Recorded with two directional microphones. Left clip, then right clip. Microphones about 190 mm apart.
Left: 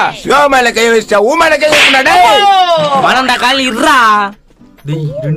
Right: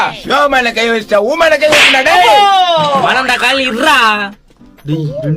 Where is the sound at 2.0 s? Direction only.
35° left (ahead or behind).